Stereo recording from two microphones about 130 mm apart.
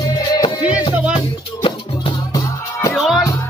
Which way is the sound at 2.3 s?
20° left (ahead or behind).